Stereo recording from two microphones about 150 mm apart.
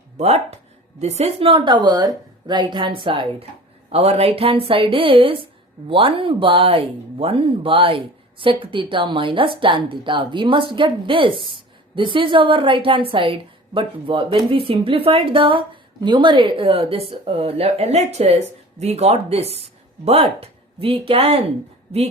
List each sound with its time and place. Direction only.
0.2 s speech: 45° right (ahead or behind)